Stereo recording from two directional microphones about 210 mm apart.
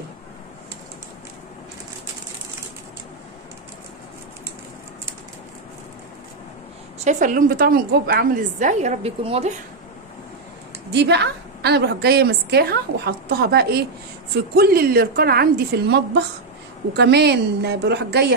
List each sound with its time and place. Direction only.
7.1 s a woman's voice: 40° right (ahead or behind)
10.9 s a woman's voice: 55° right (ahead or behind)